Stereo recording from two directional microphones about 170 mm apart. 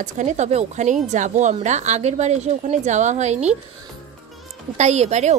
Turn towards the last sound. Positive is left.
turn(degrees=-40)  # may be behind; listen again after turning